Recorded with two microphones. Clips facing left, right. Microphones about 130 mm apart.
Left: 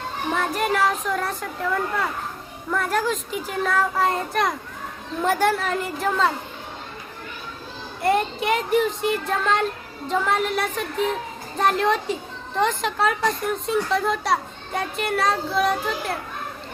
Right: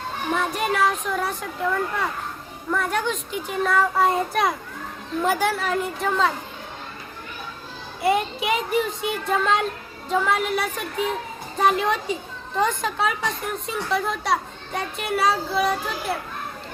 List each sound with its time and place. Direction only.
0.3 s speech: centre (ahead or behind)
8.0 s speech: 5° right (ahead or behind)